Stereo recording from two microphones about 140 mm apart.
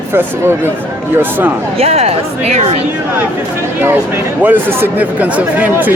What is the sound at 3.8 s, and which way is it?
Speech, 15° right (ahead or behind).